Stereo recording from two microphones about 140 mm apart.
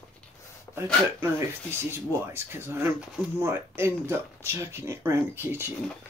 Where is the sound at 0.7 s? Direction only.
20° left (ahead or behind).